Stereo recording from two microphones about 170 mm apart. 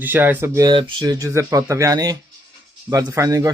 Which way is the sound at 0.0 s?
10° right (ahead or behind).